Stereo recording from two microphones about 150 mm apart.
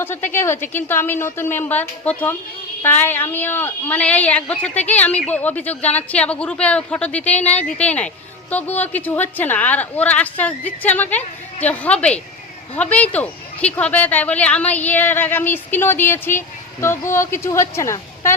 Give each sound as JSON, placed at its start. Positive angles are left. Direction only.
{"t": 0.0, "sound": "a woman's voice", "side_deg": 15}